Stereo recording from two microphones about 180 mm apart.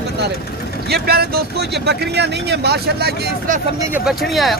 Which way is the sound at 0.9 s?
60° right (ahead or behind).